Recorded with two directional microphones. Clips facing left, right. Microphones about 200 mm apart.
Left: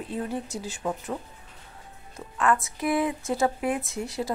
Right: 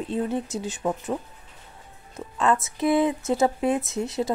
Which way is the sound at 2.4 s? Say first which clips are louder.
Right 2 dB; 25° right (ahead or behind).